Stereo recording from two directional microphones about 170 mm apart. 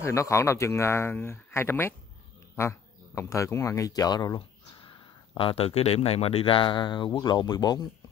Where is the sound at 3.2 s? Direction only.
15° left (ahead or behind).